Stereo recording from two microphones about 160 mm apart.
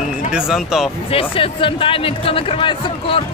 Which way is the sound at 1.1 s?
35° left (ahead or behind).